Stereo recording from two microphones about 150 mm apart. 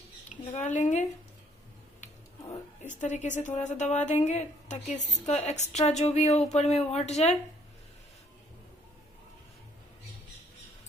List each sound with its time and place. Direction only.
0.5 s a woman's voice: 50° left (ahead or behind)
2.8 s a woman's voice: 55° left (ahead or behind)